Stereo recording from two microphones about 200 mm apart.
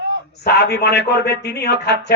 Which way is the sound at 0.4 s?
55° left (ahead or behind).